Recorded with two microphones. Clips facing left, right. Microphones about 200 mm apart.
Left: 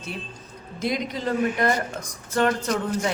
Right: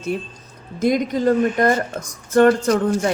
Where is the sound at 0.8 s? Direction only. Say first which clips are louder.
Right 9 dB; 45° right (ahead or behind).